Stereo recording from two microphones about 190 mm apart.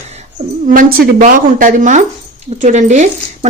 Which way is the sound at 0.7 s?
50° right (ahead or behind).